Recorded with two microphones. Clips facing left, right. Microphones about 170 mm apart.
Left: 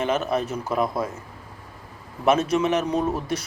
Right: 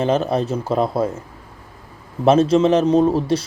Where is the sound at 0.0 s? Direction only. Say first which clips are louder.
Right 5 dB; 30° right (ahead or behind).